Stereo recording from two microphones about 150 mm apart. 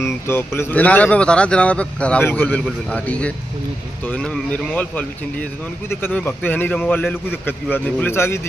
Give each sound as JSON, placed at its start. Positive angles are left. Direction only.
{"t": 0.0, "sound": "speech", "side_deg": 15}